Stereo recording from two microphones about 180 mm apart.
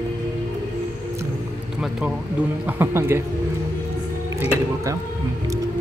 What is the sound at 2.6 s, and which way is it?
Speech, 10° right (ahead or behind).